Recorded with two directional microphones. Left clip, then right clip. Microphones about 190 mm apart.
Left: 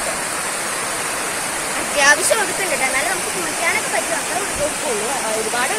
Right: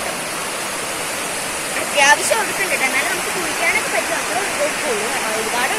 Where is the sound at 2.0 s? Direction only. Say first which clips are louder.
Right 1 dB; 45° left (ahead or behind).